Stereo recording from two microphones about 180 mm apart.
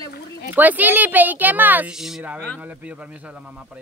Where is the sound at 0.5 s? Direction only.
10° right (ahead or behind).